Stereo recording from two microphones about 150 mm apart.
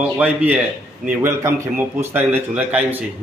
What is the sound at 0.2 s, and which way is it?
A man's voice, 10° right (ahead or behind).